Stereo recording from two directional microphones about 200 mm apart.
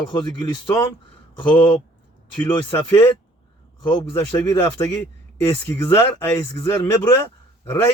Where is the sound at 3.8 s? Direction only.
20° left (ahead or behind).